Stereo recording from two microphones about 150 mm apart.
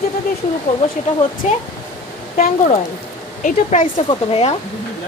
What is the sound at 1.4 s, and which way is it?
Speech, 55° left (ahead or behind).